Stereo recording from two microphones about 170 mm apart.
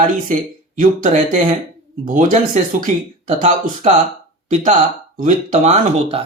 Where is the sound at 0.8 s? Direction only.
50° right (ahead or behind).